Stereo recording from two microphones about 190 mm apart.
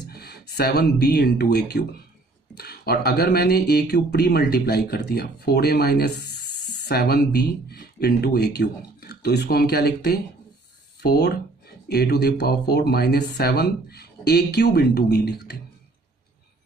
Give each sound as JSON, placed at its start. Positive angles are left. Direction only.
{"t": 0.0, "sound": "speech", "side_deg": 55}